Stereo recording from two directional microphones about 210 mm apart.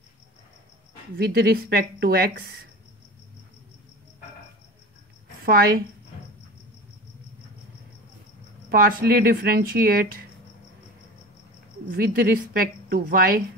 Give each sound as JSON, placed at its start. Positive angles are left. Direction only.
{"t": 1.1, "sound": "speech", "side_deg": -50}
{"t": 5.4, "sound": "a woman's voice", "side_deg": -45}
{"t": 8.6, "sound": "speech", "side_deg": -45}
{"t": 11.9, "sound": "speech", "side_deg": -45}